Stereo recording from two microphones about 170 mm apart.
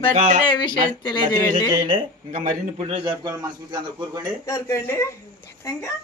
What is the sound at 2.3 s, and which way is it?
Speech, 45° right (ahead or behind).